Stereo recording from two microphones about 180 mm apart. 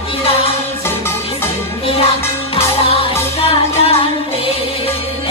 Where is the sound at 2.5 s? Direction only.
35° left (ahead or behind).